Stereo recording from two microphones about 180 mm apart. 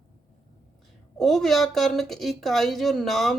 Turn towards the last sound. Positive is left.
turn(degrees=0)  # may be behind; listen again after turning